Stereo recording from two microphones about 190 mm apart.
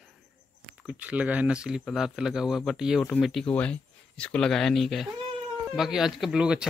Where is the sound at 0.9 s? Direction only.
5° right (ahead or behind).